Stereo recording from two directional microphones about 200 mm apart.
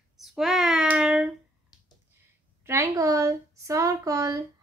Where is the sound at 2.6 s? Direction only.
10° right (ahead or behind).